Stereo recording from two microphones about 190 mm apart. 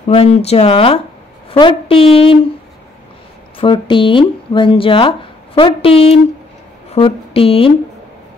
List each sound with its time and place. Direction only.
0.0 s a woman's voice: 30° left (ahead or behind)
3.5 s speech: 25° left (ahead or behind)